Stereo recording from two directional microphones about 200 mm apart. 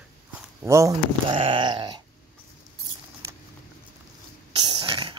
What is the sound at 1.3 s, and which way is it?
Speech, 30° right (ahead or behind).